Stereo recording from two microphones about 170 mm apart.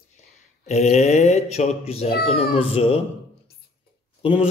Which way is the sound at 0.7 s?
40° left (ahead or behind).